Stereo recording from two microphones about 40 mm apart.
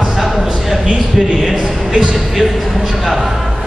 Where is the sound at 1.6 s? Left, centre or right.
Centre.